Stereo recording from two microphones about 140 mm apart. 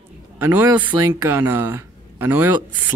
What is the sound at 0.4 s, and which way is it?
Speech, 15° right (ahead or behind).